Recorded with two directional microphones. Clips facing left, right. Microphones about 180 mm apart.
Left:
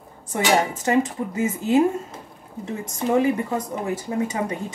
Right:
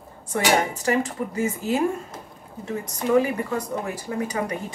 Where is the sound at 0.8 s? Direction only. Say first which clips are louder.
Left 2 dB; 20° left (ahead or behind).